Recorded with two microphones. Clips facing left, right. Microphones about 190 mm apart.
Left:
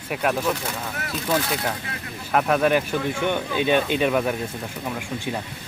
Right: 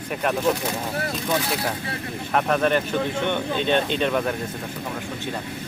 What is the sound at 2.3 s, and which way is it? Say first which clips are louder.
Speech: left 1 dB; 5° left (ahead or behind).